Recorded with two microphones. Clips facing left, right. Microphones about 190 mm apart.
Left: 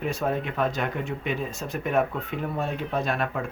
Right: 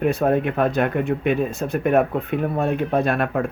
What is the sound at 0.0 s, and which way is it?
Speech, 60° right (ahead or behind).